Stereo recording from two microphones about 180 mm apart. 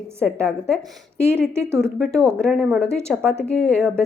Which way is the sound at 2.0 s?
5° left (ahead or behind).